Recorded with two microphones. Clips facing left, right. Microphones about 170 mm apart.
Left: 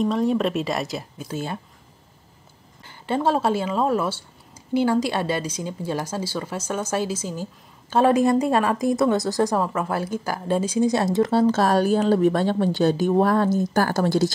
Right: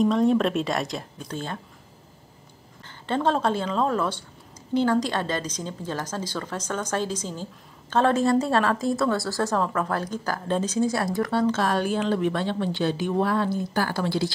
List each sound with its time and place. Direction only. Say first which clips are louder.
0.0 s speech: right 1 dB; centre (ahead or behind)
2.8 s a woman's voice: left 2 dB; 10° left (ahead or behind); by 14.3 s 45° left (ahead or behind)